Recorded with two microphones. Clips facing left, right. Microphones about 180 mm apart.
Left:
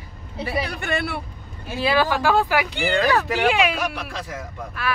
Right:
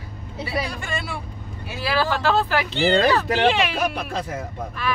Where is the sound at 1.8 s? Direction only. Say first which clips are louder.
Left 2 dB; 20° left (ahead or behind).